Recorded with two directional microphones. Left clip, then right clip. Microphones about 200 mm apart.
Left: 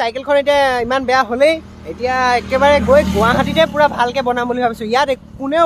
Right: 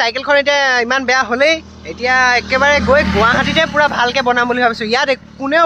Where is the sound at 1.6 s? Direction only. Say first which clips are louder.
Right 1 dB; 45° right (ahead or behind).